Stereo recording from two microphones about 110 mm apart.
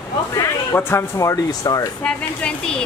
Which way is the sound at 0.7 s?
25° left (ahead or behind).